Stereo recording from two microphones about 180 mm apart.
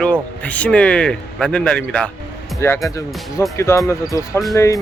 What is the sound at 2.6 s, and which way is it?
Speech, 15° left (ahead or behind).